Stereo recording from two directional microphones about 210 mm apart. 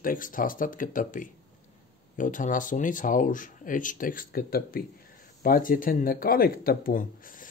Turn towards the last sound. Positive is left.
turn(degrees=40)  # may be behind; listen again after turning